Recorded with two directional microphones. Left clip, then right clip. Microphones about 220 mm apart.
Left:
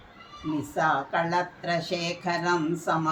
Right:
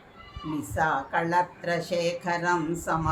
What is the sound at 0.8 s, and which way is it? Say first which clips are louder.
Speech: left 1 dB; 10° right (ahead or behind).